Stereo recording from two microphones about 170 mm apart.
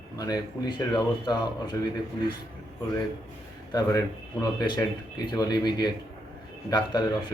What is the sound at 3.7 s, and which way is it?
A man's voice, 20° left (ahead or behind).